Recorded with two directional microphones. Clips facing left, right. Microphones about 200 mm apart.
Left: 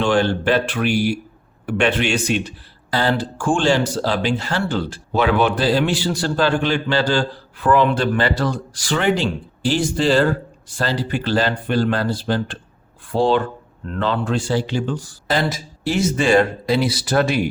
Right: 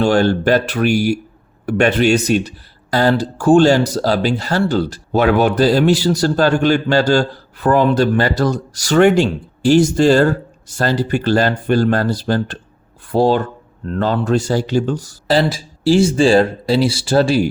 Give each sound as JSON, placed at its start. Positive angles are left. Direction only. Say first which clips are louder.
{"t": 0.0, "sound": "speech", "louder": "right 4 dB", "side_deg": -40}